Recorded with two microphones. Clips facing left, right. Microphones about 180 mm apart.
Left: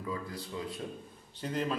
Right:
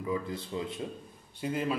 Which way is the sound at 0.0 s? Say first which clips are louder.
Right 5 dB; 20° right (ahead or behind).